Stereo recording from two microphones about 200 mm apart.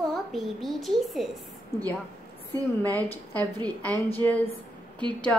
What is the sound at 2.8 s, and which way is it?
Speech, 10° left (ahead or behind).